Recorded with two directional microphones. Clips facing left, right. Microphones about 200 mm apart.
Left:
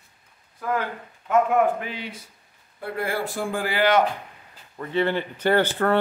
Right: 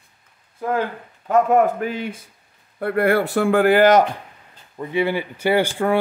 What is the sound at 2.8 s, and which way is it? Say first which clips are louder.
Speech: right 9 dB; 60° right (ahead or behind).